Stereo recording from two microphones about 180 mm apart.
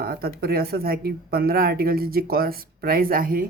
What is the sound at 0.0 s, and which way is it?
Speech, 60° right (ahead or behind).